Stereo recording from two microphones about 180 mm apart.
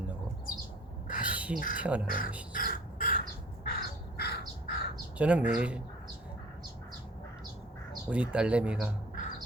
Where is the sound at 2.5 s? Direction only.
50° left (ahead or behind).